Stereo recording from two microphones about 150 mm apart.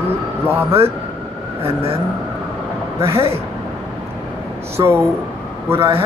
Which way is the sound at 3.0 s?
40° right (ahead or behind).